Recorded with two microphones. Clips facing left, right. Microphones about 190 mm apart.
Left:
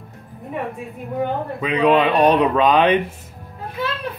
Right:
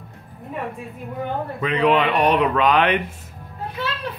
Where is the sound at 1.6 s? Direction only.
15° left (ahead or behind).